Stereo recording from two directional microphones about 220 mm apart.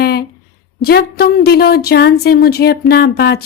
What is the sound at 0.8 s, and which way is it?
A woman's voice, 45° left (ahead or behind).